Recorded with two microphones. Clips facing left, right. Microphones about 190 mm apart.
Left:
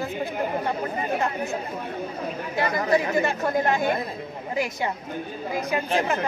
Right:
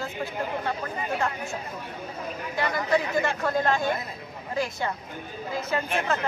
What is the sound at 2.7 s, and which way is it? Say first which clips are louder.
Speech: left 3 dB; 20° left (ahead or behind).